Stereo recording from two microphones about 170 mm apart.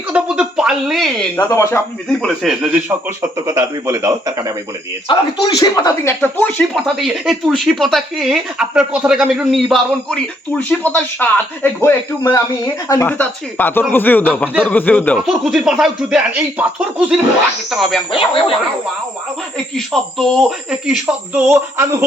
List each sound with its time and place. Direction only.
0.1 s speech: 5° right (ahead or behind)
1.4 s speech: 15° left (ahead or behind)
2.2 s speech: centre (ahead or behind)
3.2 s speech: 15° right (ahead or behind)
5.0 s speech: 25° left (ahead or behind)
6.2 s speech: 5° left (ahead or behind)
18.1 s speech: 30° left (ahead or behind)
19.7 s speech: centre (ahead or behind); by 21.8 s 15° right (ahead or behind)